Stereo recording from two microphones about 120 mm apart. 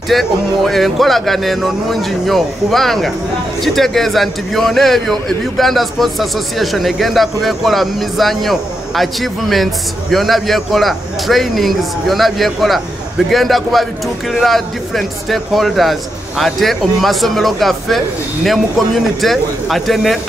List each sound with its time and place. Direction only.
0.1 s speech: centre (ahead or behind)